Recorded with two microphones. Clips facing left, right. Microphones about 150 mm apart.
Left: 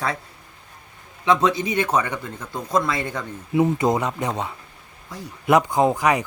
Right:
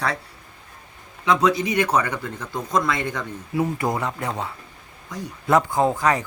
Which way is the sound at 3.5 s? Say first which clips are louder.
Left 5 dB; 20° left (ahead or behind).